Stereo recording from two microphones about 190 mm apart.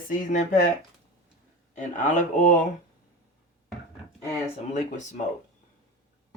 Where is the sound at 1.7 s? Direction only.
40° left (ahead or behind).